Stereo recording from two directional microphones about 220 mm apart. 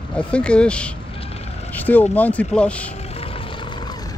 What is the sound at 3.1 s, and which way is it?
Vehicle, 25° left (ahead or behind).